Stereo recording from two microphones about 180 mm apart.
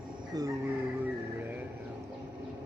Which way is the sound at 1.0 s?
10° right (ahead or behind).